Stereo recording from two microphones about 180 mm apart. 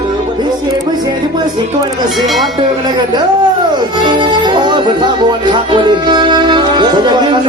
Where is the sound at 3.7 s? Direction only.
25° right (ahead or behind).